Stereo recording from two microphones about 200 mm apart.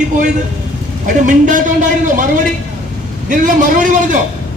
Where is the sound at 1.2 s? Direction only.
40° right (ahead or behind).